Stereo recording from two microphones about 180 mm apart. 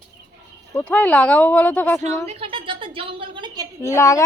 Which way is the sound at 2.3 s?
30° right (ahead or behind).